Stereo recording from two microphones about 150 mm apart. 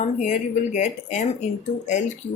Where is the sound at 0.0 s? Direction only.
55° left (ahead or behind).